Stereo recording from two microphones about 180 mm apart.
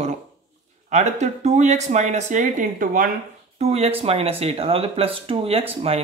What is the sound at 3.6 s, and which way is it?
Speech, 35° right (ahead or behind).